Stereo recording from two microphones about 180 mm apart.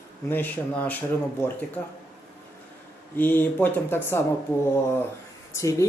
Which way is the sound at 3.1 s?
10° left (ahead or behind).